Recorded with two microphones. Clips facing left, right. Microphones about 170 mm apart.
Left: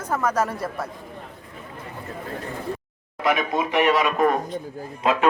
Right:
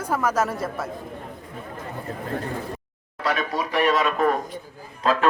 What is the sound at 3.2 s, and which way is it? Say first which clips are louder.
A man's voice: left 3 dB; 20° left (ahead or behind).